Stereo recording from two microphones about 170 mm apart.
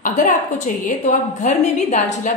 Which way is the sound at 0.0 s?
45° left (ahead or behind).